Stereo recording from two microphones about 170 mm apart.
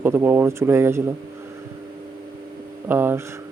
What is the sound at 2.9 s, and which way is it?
Speech, 10° right (ahead or behind).